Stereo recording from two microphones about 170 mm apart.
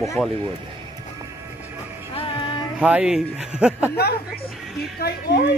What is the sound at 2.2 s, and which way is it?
Music, 30° left (ahead or behind).